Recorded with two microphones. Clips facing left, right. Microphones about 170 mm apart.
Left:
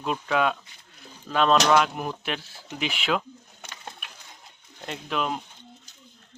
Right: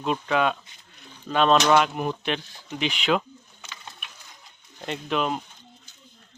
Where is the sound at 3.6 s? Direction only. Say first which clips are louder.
Left 2 dB; 50° left (ahead or behind).